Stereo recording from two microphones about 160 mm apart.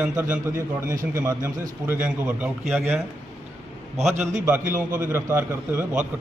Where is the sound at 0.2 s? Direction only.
15° right (ahead or behind); by 3.0 s centre (ahead or behind).